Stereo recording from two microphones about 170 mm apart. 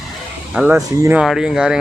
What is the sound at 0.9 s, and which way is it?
Speech, 20° right (ahead or behind).